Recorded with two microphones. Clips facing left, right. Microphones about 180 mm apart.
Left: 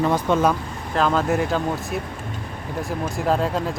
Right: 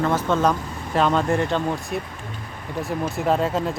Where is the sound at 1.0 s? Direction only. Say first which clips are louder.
Even; centre (ahead or behind).